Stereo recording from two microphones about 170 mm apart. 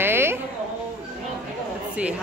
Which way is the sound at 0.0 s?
15° right (ahead or behind).